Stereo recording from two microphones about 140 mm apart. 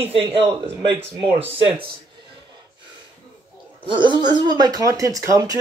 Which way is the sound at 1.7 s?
35° right (ahead or behind).